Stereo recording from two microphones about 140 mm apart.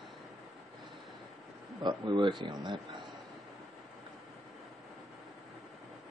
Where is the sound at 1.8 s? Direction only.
35° right (ahead or behind).